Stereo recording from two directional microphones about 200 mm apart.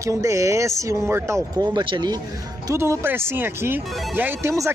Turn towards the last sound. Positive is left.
turn(degrees=-15)  # may be behind; listen again after turning